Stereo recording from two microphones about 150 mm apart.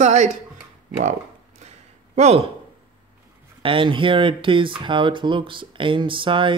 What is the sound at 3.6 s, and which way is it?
Speech, 35° right (ahead or behind).